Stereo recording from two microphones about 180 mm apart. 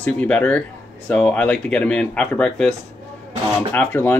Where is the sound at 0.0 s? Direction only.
10° left (ahead or behind).